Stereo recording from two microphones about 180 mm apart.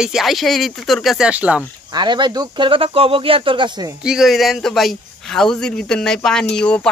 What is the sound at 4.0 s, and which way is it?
Speech, 5° right (ahead or behind).